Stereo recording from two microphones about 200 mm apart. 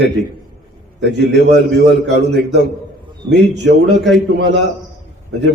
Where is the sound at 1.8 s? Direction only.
60° right (ahead or behind).